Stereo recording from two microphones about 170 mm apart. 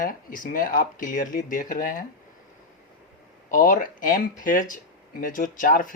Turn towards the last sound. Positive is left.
turn(degrees=55)  # may be behind; listen again after turning